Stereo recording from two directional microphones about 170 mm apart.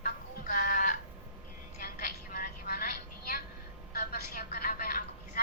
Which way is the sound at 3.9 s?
65° left (ahead or behind).